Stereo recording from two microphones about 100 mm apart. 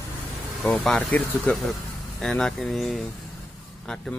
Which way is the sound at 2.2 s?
5° left (ahead or behind).